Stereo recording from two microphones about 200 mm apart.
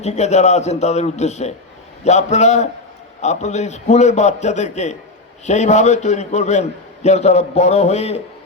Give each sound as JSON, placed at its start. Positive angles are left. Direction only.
{"t": 0.0, "sound": "a man's voice", "side_deg": 35}